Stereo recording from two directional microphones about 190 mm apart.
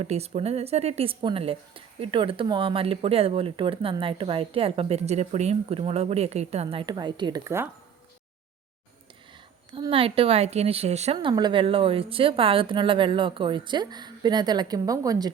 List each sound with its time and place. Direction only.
0.0 s speech: 35° right (ahead or behind); by 7.7 s 15° right (ahead or behind)
9.7 s speech: 30° right (ahead or behind)